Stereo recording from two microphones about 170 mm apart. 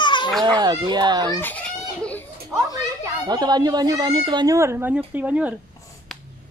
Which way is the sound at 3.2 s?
25° right (ahead or behind).